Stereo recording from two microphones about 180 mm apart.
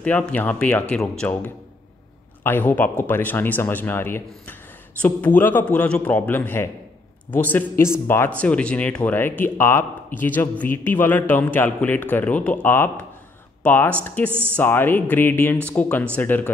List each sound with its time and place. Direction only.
0.0 s a man's voice: 10° left (ahead or behind)